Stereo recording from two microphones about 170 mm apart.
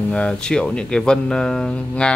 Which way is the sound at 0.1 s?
5° left (ahead or behind).